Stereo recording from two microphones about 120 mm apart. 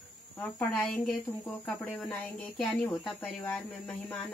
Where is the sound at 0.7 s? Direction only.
5° left (ahead or behind).